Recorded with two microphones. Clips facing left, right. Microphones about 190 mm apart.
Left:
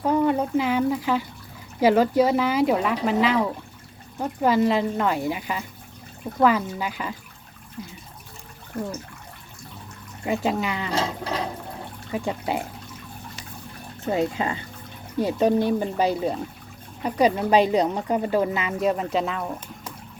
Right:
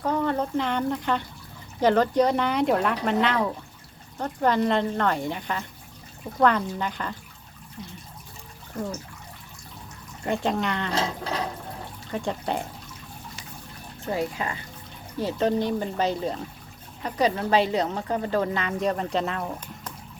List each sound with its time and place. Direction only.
0.0 s speech: 10° left (ahead or behind)
10.2 s speech: 5° left (ahead or behind)
12.1 s speech: 5° left (ahead or behind)
14.1 s speech: 25° left (ahead or behind)
15.2 s speech: 10° left (ahead or behind)